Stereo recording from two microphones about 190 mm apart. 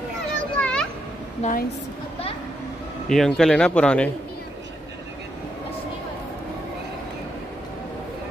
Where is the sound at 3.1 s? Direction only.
Centre (ahead or behind).